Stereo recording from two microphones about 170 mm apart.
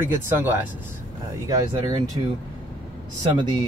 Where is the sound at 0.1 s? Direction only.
10° right (ahead or behind).